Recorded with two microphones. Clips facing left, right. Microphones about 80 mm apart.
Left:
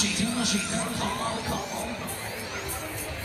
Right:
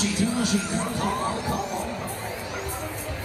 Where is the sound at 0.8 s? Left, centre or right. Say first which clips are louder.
Right 4 dB; centre.